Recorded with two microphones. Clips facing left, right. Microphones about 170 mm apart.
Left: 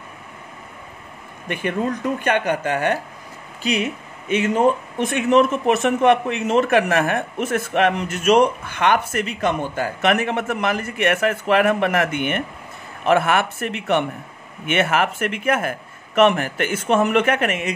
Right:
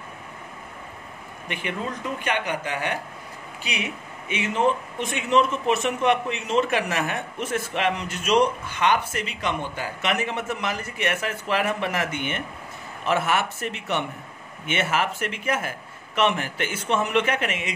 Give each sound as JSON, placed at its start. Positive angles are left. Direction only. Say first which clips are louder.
{"t": 1.5, "sound": "a man's voice", "louder": "left 7 dB", "side_deg": 50}